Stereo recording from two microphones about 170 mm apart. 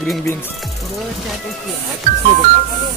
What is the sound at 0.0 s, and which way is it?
Speech, centre (ahead or behind).